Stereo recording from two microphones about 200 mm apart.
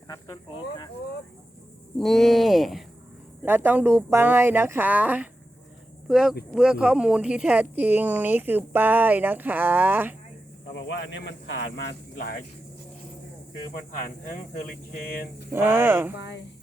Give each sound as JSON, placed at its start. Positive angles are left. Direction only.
{"t": 2.0, "sound": "speech", "side_deg": 0}
{"t": 10.8, "sound": "speech", "side_deg": 65}
{"t": 14.0, "sound": "speech", "side_deg": 40}
{"t": 15.4, "sound": "speech", "side_deg": -10}